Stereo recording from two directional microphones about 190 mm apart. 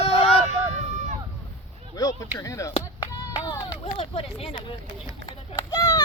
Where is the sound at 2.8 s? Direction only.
20° left (ahead or behind).